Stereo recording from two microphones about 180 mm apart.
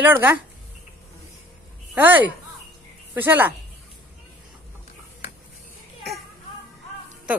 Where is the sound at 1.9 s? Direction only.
10° right (ahead or behind).